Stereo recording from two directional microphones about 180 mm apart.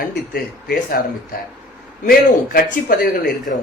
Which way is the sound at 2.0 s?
55° left (ahead or behind).